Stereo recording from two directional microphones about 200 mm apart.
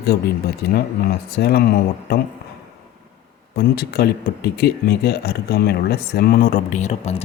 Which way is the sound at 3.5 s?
55° left (ahead or behind).